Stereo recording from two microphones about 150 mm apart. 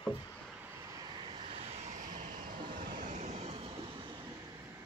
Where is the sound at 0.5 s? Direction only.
15° right (ahead or behind); by 4.1 s 35° right (ahead or behind).